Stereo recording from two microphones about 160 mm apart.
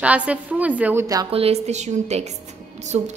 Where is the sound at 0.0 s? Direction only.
10° right (ahead or behind).